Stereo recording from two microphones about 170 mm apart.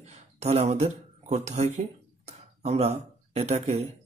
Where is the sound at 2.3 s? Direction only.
40° right (ahead or behind).